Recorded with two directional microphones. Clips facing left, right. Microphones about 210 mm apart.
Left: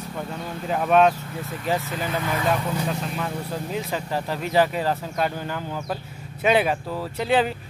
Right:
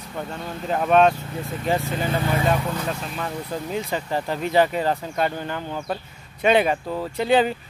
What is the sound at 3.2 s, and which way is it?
Speech, centre (ahead or behind).